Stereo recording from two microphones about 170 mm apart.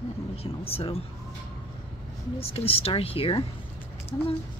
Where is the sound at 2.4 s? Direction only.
35° left (ahead or behind).